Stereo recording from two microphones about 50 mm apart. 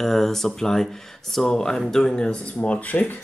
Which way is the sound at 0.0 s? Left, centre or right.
Centre.